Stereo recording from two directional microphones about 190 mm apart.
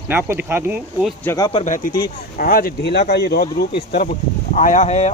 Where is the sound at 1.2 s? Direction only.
15° left (ahead or behind).